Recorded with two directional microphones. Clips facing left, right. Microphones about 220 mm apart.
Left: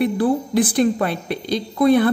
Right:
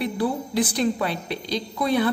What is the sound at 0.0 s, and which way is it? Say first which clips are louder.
A woman's voice: left 6 dB; 50° left (ahead or behind).